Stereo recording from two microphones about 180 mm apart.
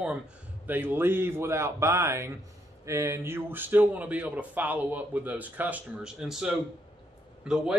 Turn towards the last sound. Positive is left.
turn(degrees=-5)  # may be behind; listen again after turning